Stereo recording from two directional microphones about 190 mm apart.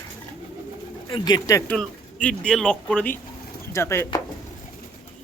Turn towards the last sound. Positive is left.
turn(degrees=15)  # may be behind; listen again after turning